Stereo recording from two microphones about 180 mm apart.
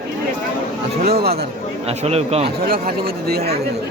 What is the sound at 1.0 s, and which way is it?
Speech, 60° right (ahead or behind).